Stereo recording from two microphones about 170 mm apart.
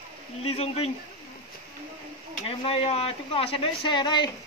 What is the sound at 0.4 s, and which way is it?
Speech, 35° left (ahead or behind).